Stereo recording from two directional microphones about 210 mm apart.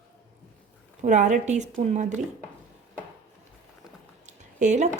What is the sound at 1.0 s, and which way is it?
A woman's voice, 35° right (ahead or behind).